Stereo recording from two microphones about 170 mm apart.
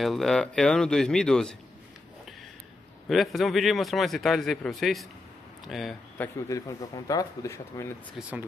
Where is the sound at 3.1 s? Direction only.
Centre (ahead or behind).